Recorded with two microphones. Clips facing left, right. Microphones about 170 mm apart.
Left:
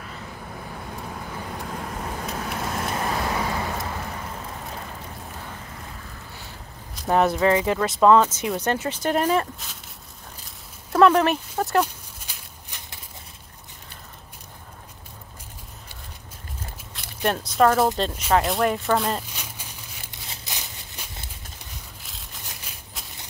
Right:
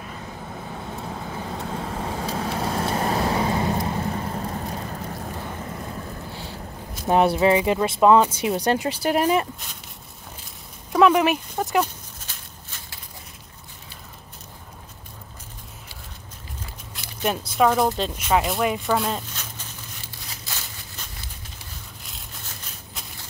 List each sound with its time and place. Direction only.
1.0 s vehicle: 30° right (ahead or behind)
7.1 s speech: 20° right (ahead or behind)
10.9 s a sound: 10° right (ahead or behind)
11.5 s speech: centre (ahead or behind)
11.8 s dog: 15° left (ahead or behind)
16.9 s speech: 5° right (ahead or behind)
19.2 s a sound: 10° left (ahead or behind)
22.4 s crushing: 10° left (ahead or behind)